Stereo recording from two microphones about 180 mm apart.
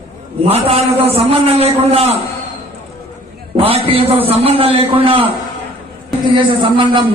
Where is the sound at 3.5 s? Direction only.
30° right (ahead or behind).